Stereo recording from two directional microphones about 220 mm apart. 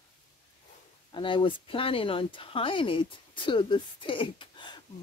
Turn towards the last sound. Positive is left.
turn(degrees=20)  # may be behind; listen again after turning